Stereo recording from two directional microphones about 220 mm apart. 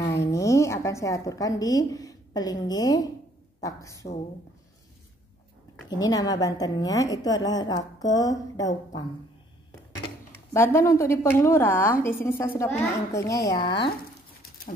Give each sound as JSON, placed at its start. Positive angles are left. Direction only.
{"t": 0.0, "sound": "a woman's voice", "side_deg": 15}
{"t": 5.9, "sound": "a woman's voice", "side_deg": 15}
{"t": 10.5, "sound": "a woman's voice", "side_deg": 10}